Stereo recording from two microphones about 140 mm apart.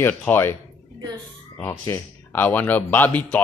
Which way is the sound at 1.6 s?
20° left (ahead or behind).